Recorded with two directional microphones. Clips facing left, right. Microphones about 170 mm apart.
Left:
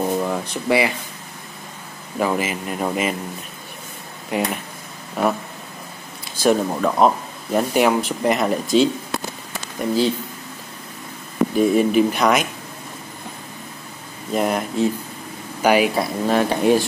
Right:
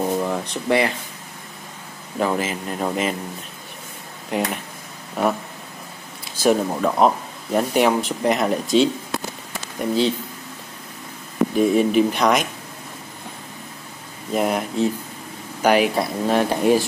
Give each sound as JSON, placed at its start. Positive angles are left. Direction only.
{"t": 0.0, "sound": "a sound", "side_deg": 0}
{"t": 2.1, "sound": "speech", "side_deg": 5}
{"t": 4.3, "sound": "speech", "side_deg": 5}
{"t": 11.5, "sound": "speech", "side_deg": 0}
{"t": 14.3, "sound": "speech", "side_deg": 0}